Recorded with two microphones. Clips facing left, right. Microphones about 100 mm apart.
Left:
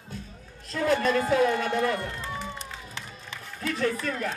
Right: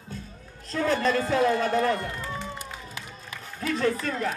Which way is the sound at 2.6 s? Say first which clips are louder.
Right 1 dB; 30° left (ahead or behind).